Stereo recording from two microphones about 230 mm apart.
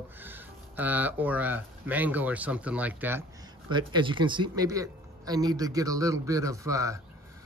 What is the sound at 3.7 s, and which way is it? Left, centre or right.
Speech, right.